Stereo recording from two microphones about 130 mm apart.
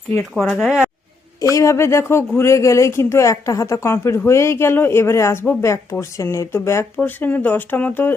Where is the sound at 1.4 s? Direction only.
25° left (ahead or behind).